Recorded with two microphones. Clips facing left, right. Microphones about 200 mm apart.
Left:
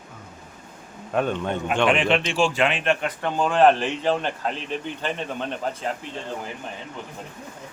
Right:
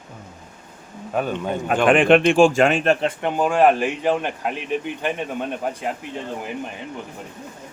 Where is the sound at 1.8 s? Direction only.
50° right (ahead or behind); by 3.1 s 35° right (ahead or behind).